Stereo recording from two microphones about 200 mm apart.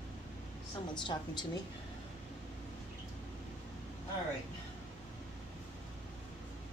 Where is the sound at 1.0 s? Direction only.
20° left (ahead or behind).